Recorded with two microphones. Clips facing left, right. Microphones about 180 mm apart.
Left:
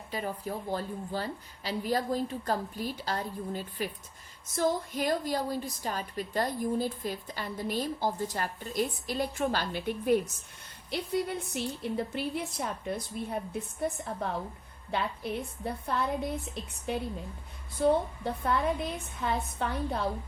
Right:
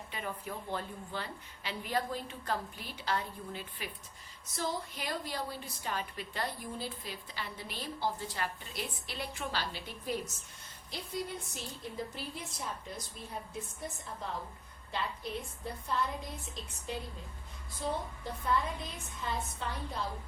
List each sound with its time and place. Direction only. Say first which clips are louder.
0.1 s a woman's voice: left 7 dB; 35° left (ahead or behind); by 10.2 s 55° left (ahead or behind)
10.9 s a woman's voice: left 8 dB; 65° left (ahead or behind)